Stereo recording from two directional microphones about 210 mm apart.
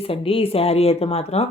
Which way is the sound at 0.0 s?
25° left (ahead or behind).